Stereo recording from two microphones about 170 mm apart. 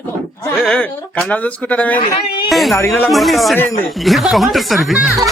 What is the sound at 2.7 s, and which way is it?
Speech, 15° left (ahead or behind).